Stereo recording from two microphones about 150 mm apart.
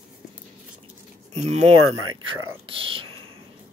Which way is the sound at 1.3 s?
50° right (ahead or behind).